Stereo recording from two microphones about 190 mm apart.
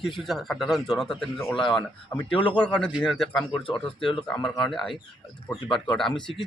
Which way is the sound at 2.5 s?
5° left (ahead or behind).